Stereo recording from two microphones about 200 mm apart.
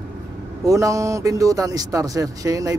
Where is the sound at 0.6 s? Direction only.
15° right (ahead or behind).